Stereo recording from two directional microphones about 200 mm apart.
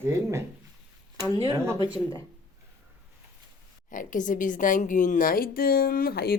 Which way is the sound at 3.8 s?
40° left (ahead or behind).